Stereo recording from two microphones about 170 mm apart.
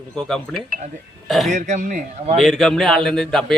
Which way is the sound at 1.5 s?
45° right (ahead or behind).